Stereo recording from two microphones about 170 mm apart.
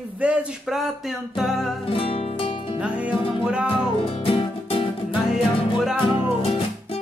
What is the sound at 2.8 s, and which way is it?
Music, 5° right (ahead or behind).